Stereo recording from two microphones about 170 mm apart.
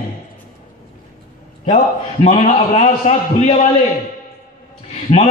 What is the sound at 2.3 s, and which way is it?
Speech, 40° left (ahead or behind).